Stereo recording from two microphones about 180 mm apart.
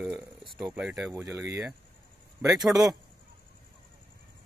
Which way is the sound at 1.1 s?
15° right (ahead or behind).